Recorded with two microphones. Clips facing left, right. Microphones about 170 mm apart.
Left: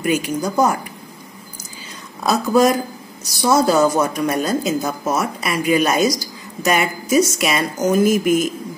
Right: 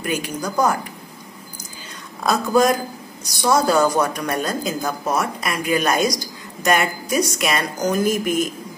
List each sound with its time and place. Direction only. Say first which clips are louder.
0.0 s speech: left 5 dB; 10° left (ahead or behind)
2.2 s speech: left 2 dB; centre (ahead or behind)